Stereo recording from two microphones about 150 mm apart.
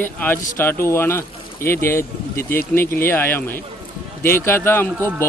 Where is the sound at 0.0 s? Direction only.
15° left (ahead or behind).